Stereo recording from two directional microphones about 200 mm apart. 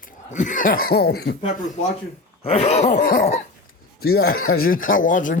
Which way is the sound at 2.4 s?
30° left (ahead or behind).